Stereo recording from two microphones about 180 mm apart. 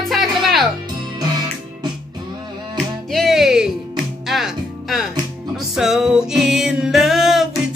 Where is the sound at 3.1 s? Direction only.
Centre (ahead or behind).